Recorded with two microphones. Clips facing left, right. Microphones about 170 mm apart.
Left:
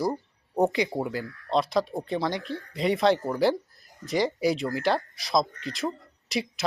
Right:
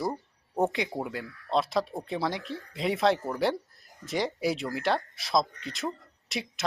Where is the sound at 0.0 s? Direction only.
Centre (ahead or behind).